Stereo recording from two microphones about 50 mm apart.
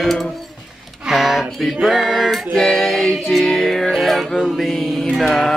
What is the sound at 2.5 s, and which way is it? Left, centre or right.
Female singing, centre.